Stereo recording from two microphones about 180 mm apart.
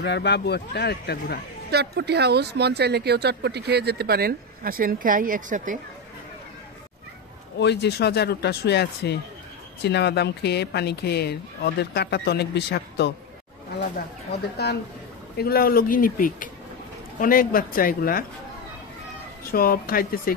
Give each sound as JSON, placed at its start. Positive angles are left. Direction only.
{"t": 0.0, "sound": "speech", "side_deg": 70}
{"t": 1.7, "sound": "speech", "side_deg": -65}
{"t": 7.5, "sound": "speech", "side_deg": 70}
{"t": 15.3, "sound": "speech", "side_deg": 60}
{"t": 19.5, "sound": "speech", "side_deg": 55}